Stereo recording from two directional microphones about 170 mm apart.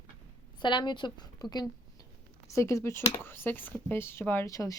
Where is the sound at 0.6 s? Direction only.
25° left (ahead or behind).